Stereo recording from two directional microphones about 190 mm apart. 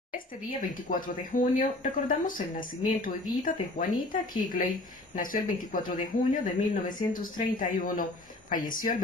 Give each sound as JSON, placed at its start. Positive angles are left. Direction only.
{"t": 0.6, "sound": "speech", "side_deg": 45}
{"t": 3.9, "sound": "speech", "side_deg": 20}
{"t": 4.5, "sound": "speech", "side_deg": 45}